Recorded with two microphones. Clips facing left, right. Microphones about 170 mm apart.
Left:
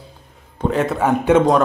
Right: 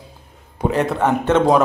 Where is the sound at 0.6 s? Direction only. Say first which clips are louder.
Even; centre (ahead or behind).